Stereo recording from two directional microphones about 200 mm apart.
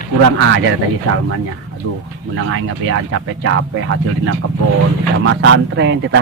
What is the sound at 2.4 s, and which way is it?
Speech, 90° right.